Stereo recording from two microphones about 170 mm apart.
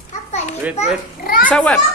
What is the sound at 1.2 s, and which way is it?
Speech, 55° left (ahead or behind).